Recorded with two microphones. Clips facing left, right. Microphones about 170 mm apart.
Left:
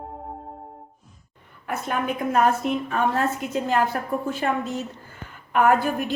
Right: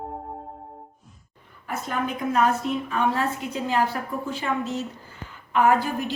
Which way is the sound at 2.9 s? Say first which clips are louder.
Even; 50° left (ahead or behind).